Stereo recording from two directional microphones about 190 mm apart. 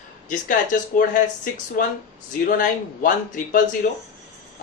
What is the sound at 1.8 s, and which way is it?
Speech, 45° left (ahead or behind).